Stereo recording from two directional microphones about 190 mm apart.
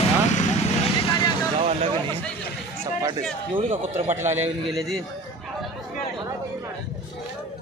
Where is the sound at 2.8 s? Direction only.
20° right (ahead or behind).